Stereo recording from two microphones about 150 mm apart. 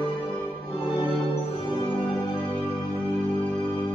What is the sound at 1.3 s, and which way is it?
Music, 40° left (ahead or behind).